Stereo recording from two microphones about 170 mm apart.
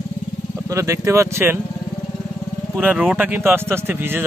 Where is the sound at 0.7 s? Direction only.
20° right (ahead or behind).